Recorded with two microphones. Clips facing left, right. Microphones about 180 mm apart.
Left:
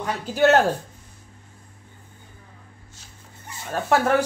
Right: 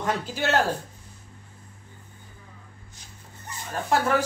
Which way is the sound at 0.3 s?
50° left (ahead or behind).